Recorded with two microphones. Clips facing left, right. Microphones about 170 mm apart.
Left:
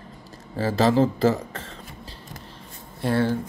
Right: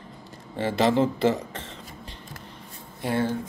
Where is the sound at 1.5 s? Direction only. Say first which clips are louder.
Left 1 dB; 25° right (ahead or behind).